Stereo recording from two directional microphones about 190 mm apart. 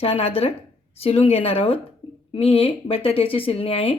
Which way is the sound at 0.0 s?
30° left (ahead or behind).